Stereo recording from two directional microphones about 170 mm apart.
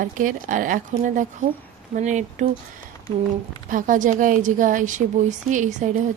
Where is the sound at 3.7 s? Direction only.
50° right (ahead or behind).